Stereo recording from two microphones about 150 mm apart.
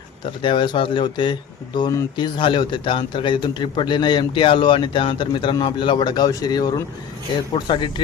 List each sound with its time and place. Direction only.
0.4 s speech: 35° left (ahead or behind)